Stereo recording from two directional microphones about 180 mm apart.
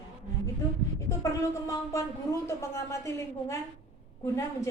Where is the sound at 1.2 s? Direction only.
15° left (ahead or behind).